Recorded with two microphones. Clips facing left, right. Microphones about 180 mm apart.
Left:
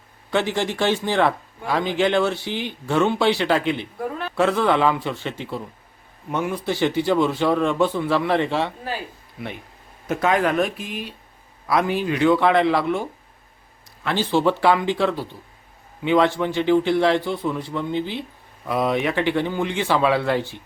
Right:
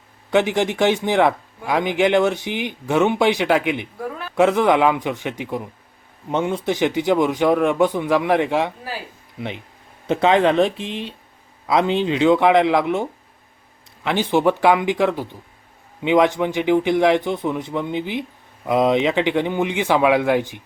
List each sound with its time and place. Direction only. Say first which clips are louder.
0.3 s speech: right 4 dB; 15° right (ahead or behind)
10.1 s speech: right 4 dB; 25° right (ahead or behind)